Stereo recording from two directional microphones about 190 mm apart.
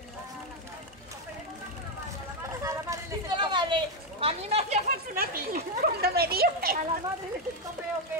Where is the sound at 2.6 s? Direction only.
20° right (ahead or behind); by 5.0 s 35° right (ahead or behind).